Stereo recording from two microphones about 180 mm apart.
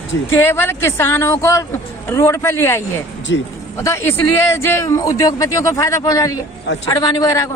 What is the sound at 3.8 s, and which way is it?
A woman's voice, 15° left (ahead or behind).